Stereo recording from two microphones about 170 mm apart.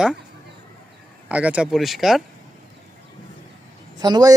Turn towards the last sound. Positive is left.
turn(degrees=-25)  # may be behind; listen again after turning